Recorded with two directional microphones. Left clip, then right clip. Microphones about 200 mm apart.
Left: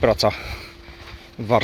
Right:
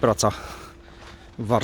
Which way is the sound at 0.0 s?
25° right (ahead or behind).